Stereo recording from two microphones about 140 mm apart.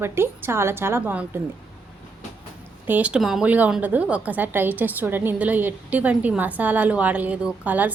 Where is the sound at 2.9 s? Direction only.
10° right (ahead or behind).